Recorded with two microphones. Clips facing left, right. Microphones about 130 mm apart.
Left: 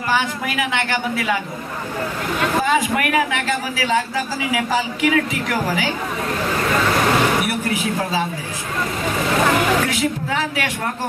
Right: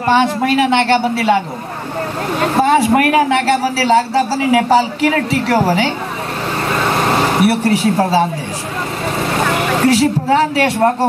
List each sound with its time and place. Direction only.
0.0 s a man's voice: 30° right (ahead or behind)
2.4 s a man's voice: 35° right (ahead or behind)
7.1 s a sound: 30° right (ahead or behind)
7.6 s a man's voice: 35° right (ahead or behind)
9.6 s a man's voice: 35° right (ahead or behind)